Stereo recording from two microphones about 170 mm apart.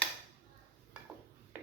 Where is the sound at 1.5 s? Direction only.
10° right (ahead or behind).